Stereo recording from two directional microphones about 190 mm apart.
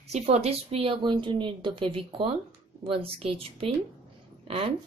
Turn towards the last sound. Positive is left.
turn(degrees=-30)  # may be behind; listen again after turning